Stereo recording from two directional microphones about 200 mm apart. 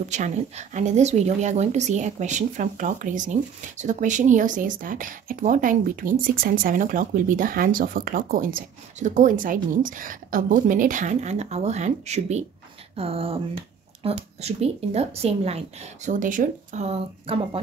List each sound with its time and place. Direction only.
0.1 s speech: 35° right (ahead or behind)